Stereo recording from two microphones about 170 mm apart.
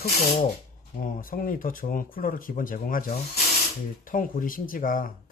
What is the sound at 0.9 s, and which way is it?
Speech, 55° left (ahead or behind).